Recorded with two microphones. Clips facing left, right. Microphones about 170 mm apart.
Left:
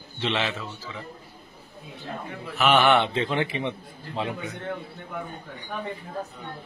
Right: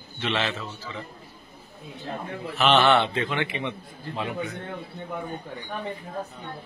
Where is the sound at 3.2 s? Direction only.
35° left (ahead or behind).